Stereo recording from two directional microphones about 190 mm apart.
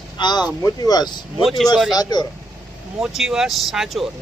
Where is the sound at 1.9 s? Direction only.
20° left (ahead or behind).